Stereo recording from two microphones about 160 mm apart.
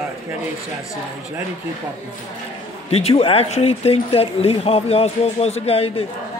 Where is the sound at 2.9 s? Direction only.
40° left (ahead or behind).